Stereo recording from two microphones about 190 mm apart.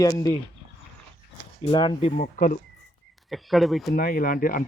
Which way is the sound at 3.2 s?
Centre (ahead or behind).